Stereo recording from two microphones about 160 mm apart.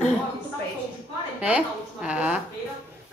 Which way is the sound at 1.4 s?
5° right (ahead or behind).